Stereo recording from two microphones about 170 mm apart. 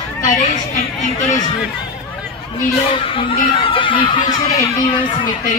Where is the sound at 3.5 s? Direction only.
30° left (ahead or behind).